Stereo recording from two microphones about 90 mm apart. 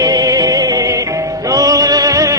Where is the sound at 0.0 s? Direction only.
45° right (ahead or behind).